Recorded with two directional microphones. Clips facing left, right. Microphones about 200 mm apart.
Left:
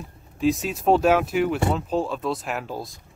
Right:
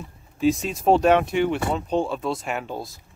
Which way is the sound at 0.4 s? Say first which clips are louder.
Right 1 dB; centre (ahead or behind).